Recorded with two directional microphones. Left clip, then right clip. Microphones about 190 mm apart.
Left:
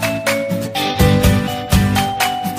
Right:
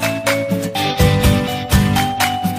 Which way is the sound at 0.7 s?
Centre (ahead or behind).